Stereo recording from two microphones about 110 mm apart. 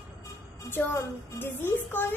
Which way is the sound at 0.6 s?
20° left (ahead or behind).